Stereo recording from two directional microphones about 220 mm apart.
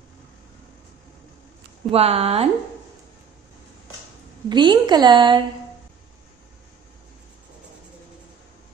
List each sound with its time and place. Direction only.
1.9 s a woman's voice: 25° right (ahead or behind)
4.5 s a woman's voice: 20° right (ahead or behind)